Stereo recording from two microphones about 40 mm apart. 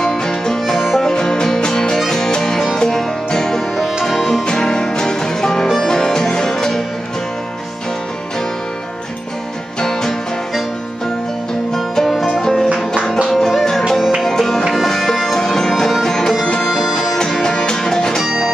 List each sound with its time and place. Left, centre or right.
0.0 s music: centre
1.1 s music: centre
3.7 s music: centre
4.5 s music: centre
9.8 s music: centre
11.7 s music: centre
12.1 s music: centre
12.4 s music: centre
13.3 s music: centre
18.2 s music: centre